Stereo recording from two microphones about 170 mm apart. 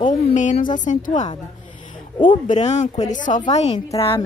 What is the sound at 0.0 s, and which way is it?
A woman's voice, 45° left (ahead or behind).